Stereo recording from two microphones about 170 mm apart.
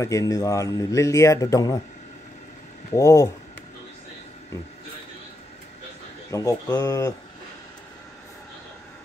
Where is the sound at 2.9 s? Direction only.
20° left (ahead or behind).